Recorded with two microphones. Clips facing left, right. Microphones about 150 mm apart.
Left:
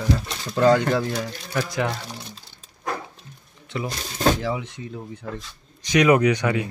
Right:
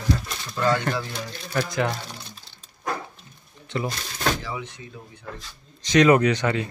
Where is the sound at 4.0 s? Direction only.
25° left (ahead or behind).